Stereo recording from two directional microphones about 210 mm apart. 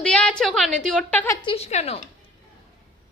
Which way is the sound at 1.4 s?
30° left (ahead or behind).